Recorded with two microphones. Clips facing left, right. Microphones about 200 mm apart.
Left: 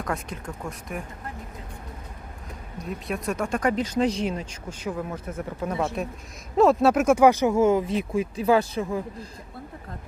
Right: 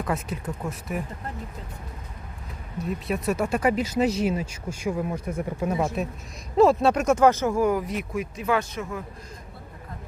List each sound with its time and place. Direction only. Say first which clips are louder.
0.0 s speech: right 2 dB; 5° right (ahead or behind)
3.1 s speech: right 2 dB; 5° right (ahead or behind)
6.6 s speech: even; centre (ahead or behind); by 9.0 s 30° left (ahead or behind)